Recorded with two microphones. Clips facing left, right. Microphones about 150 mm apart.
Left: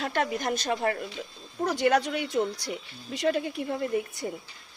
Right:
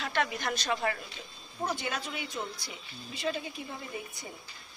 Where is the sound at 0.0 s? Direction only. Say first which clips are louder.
Left 4 dB; 45° left (ahead or behind).